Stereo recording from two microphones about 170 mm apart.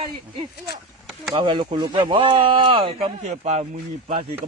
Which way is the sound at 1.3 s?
30° right (ahead or behind).